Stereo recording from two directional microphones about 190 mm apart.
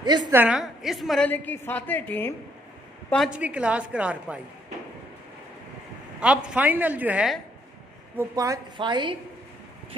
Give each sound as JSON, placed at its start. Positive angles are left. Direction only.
{"t": 0.0, "sound": "a woman's voice", "side_deg": -20}
{"t": 0.3, "sound": "a woman's voice", "side_deg": -10}
{"t": 3.1, "sound": "a woman's voice", "side_deg": 0}
{"t": 6.1, "sound": "a woman's voice", "side_deg": -5}
{"t": 8.2, "sound": "a woman's voice", "side_deg": -15}